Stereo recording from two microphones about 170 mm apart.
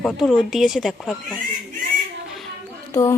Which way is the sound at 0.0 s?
5° right (ahead or behind).